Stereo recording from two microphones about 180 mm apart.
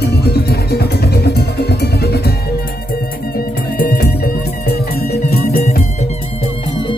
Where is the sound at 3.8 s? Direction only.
55° left (ahead or behind).